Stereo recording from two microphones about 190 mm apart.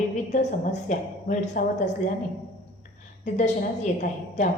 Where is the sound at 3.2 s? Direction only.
40° left (ahead or behind).